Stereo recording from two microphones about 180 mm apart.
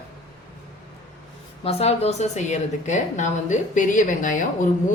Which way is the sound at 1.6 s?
35° left (ahead or behind).